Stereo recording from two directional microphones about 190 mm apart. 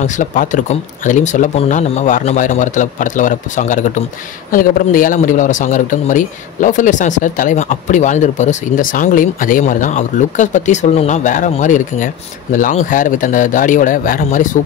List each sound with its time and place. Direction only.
0.0 s a man's voice: 45° left (ahead or behind)